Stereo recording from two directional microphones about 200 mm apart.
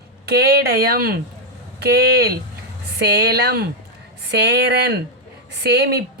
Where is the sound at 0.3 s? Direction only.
55° right (ahead or behind).